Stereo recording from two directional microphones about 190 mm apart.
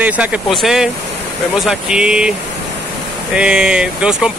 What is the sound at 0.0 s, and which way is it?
Speech, 5° right (ahead or behind).